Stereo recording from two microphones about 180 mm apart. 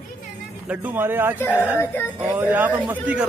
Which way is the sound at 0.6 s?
10° right (ahead or behind).